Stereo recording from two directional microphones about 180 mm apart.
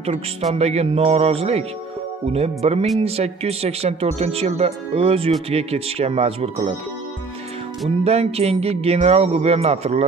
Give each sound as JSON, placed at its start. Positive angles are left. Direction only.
{"t": 0.0, "sound": "speech", "side_deg": -35}
{"t": 8.0, "sound": "speech", "side_deg": -35}